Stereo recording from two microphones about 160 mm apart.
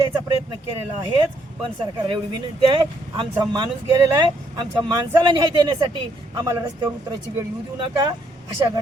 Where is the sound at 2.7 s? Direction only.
30° right (ahead or behind).